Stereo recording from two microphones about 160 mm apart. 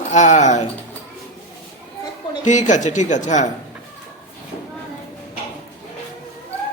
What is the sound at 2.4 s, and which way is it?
A man's voice, 50° left (ahead or behind).